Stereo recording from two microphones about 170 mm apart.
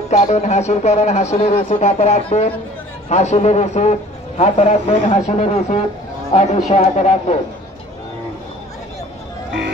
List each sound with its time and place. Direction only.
0.1 s a woman's voice: 40° left (ahead or behind)